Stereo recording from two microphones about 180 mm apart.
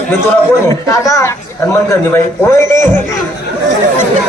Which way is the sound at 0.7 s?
15° left (ahead or behind).